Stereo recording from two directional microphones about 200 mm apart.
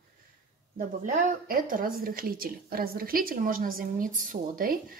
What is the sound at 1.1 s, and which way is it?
A woman's voice, 40° right (ahead or behind).